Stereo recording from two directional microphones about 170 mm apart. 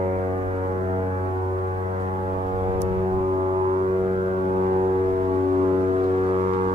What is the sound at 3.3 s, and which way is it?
Vehicle, 30° right (ahead or behind).